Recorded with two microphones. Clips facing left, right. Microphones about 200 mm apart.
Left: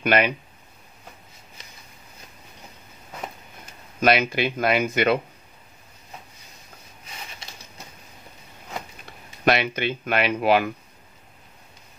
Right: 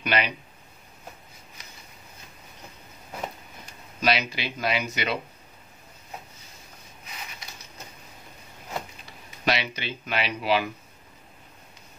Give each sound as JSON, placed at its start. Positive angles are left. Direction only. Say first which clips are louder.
{"t": 0.0, "sound": "speech", "louder": "left 6 dB", "side_deg": 50}
{"t": 4.0, "sound": "speech", "louder": "left 6 dB", "side_deg": 50}
{"t": 9.4, "sound": "speech", "louder": "left 6 dB", "side_deg": 55}